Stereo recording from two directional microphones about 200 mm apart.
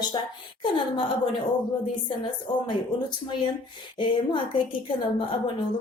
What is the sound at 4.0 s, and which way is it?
Speech, 25° left (ahead or behind).